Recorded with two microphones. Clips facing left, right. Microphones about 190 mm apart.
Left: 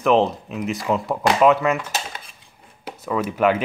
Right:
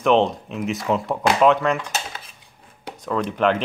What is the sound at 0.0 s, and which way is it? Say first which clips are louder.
Speech: even; centre (ahead or behind).